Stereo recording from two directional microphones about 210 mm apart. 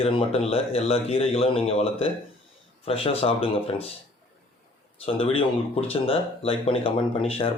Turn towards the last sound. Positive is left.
turn(degrees=25)  # may be behind; listen again after turning